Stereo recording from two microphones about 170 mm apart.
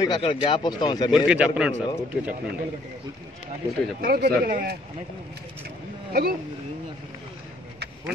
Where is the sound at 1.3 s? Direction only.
5° right (ahead or behind).